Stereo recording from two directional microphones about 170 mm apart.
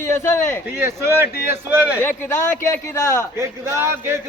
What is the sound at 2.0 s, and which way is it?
A man's voice, 10° left (ahead or behind).